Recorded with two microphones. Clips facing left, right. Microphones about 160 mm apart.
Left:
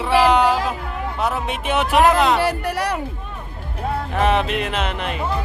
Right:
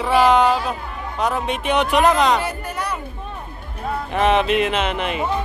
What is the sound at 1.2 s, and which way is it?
Speech, 5° left (ahead or behind).